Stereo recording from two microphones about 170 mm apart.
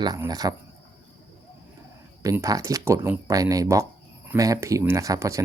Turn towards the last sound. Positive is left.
turn(degrees=-20)  # may be behind; listen again after turning